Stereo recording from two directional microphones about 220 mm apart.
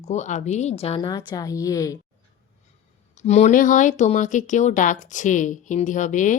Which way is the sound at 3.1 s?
30° left (ahead or behind).